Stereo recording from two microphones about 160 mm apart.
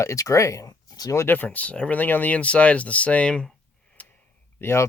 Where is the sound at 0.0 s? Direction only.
20° left (ahead or behind).